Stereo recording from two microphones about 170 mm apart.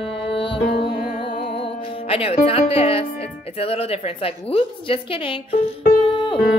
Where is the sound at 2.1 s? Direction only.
35° left (ahead or behind).